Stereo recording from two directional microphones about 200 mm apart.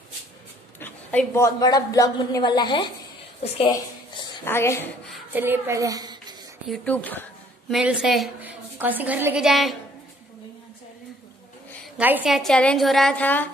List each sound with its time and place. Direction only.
0.7 s a woman's voice: 10° left (ahead or behind)
4.5 s speech: 10° left (ahead or behind)
5.3 s a woman's voice: 10° right (ahead or behind)
6.7 s speech: 5° left (ahead or behind)
7.7 s a woman's voice: 5° right (ahead or behind)
12.0 s a woman's voice: 5° right (ahead or behind); by 13.5 s 10° left (ahead or behind)